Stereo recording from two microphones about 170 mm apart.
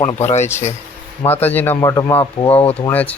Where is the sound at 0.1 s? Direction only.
40° left (ahead or behind).